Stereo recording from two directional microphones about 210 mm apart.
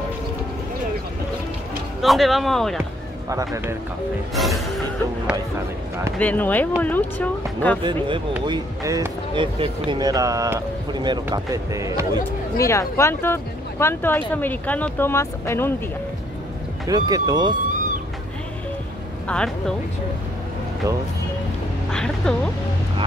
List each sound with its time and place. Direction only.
2.0 s music: centre (ahead or behind)
3.3 s speech: 15° right (ahead or behind)
4.4 s music: centre (ahead or behind)
6.1 s speech: 5° left (ahead or behind)
8.5 s speech: 15° right (ahead or behind)
12.5 s speech: 15° left (ahead or behind)
16.8 s speech: 15° right (ahead or behind)
19.2 s speech: 5° left (ahead or behind)
21.9 s music: 5° left (ahead or behind)